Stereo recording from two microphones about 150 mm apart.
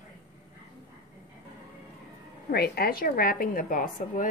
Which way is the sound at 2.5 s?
90° left.